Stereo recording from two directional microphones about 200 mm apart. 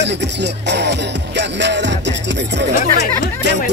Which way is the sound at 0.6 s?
60° right (ahead or behind).